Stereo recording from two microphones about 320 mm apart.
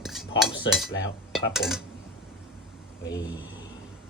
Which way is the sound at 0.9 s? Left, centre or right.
Left.